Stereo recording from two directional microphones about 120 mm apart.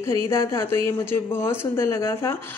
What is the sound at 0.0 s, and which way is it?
A man's voice, 20° left (ahead or behind).